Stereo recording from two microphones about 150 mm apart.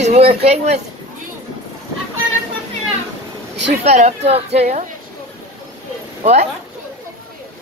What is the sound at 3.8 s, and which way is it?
A woman's voice, 45° right (ahead or behind).